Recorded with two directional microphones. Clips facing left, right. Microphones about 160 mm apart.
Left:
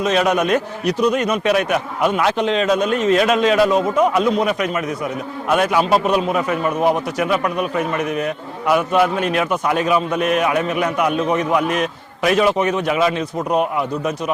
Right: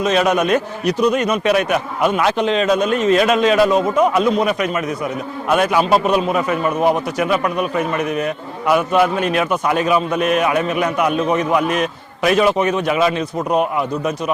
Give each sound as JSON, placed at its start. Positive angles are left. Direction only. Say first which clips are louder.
{"t": 0.0, "sound": "a man's voice", "louder": "right 1 dB", "side_deg": -15}